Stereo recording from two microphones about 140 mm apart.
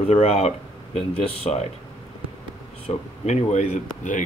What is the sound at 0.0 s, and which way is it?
Speech, 45° left (ahead or behind).